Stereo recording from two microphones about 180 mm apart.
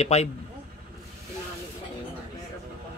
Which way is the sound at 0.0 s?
35° left (ahead or behind).